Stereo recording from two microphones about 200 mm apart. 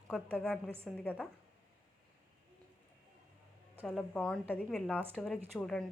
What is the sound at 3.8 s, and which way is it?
A woman's voice, 5° left (ahead or behind).